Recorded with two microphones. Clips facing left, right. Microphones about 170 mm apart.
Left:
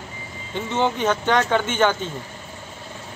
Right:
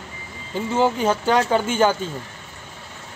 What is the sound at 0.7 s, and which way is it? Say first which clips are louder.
Speech: right 2 dB; 5° right (ahead or behind).